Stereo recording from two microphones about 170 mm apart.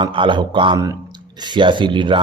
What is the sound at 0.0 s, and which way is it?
Speech, 30° right (ahead or behind).